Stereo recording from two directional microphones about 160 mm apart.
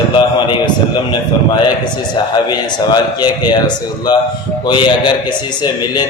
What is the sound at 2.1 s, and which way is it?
A man's voice, 25° left (ahead or behind).